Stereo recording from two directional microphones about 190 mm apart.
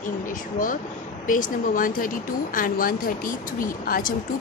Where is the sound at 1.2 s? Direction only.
45° left (ahead or behind).